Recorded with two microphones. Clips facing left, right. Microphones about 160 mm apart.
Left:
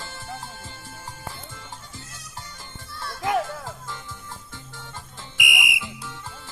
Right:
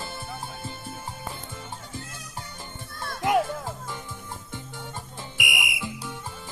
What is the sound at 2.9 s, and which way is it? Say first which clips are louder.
Children playing: left 1 dB; 50° right (ahead or behind).